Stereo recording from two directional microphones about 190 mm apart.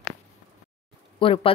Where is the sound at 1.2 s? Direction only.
30° left (ahead or behind).